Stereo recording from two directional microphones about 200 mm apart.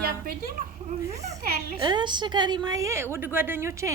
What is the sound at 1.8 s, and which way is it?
A woman's voice, 20° right (ahead or behind).